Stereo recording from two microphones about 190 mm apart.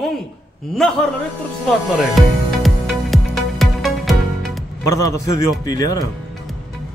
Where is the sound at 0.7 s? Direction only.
Centre (ahead or behind).